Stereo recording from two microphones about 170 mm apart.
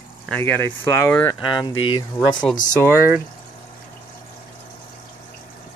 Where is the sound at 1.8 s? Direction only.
30° left (ahead or behind).